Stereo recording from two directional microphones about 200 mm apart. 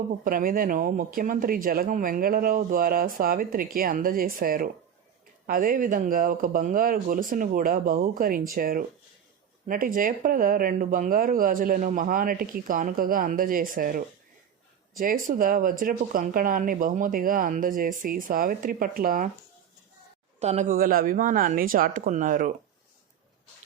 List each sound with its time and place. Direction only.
0.3 s speech: 45° right (ahead or behind)
20.4 s speech: 35° right (ahead or behind)